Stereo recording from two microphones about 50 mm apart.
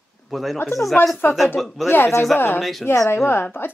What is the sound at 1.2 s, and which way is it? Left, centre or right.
Speech, left.